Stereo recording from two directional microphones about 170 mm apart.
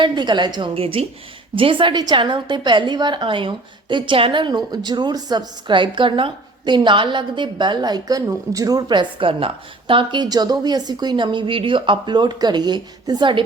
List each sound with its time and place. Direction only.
0.0 s a woman's voice: 25° right (ahead or behind)